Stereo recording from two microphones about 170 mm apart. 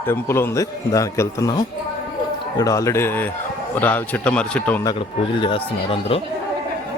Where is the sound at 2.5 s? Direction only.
20° left (ahead or behind).